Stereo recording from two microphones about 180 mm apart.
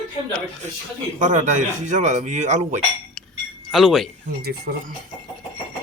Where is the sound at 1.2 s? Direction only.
40° right (ahead or behind).